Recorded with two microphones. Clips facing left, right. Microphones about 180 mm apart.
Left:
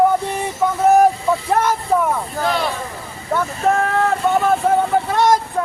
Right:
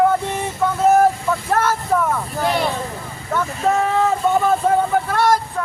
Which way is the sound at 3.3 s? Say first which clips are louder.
Left 2 dB; 10° left (ahead or behind).